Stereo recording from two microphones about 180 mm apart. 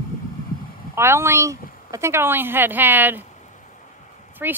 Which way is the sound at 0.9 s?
15° right (ahead or behind).